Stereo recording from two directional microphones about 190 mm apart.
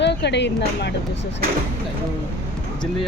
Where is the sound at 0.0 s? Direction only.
65° left (ahead or behind).